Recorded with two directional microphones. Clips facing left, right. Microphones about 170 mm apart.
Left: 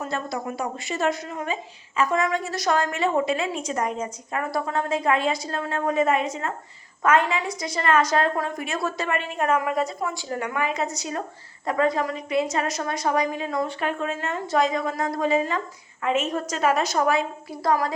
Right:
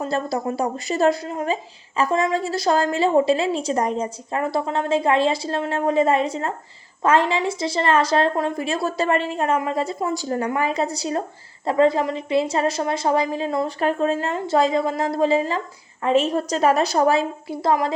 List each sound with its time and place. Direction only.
0.0 s a woman's voice: 35° right (ahead or behind)